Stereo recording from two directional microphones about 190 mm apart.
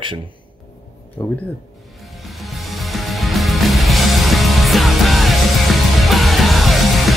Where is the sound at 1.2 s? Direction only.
15° left (ahead or behind).